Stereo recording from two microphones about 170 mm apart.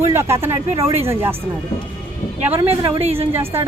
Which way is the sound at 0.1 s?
15° right (ahead or behind).